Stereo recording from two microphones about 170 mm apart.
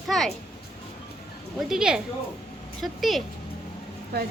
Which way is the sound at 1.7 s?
5° right (ahead or behind).